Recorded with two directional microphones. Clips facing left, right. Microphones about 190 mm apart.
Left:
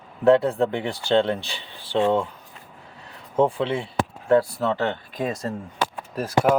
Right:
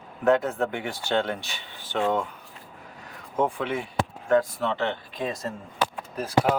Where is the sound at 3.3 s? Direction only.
30° left (ahead or behind).